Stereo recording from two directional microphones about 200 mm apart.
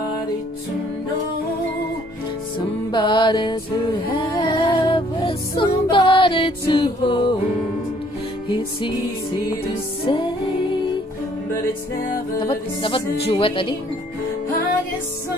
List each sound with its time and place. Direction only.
2.9 s music: 25° left (ahead or behind)
12.4 s music: 25° left (ahead or behind)